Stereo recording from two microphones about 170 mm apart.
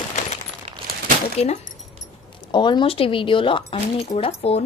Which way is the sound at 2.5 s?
25° left (ahead or behind).